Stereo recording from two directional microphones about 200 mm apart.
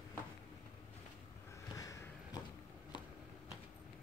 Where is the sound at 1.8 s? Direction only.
15° left (ahead or behind).